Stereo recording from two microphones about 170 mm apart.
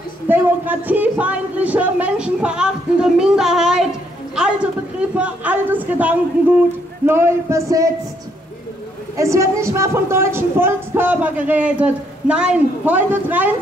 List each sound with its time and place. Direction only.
0.3 s speech: 10° right (ahead or behind)
5.1 s a woman's voice: 10° right (ahead or behind)
9.1 s a woman's voice: 15° right (ahead or behind)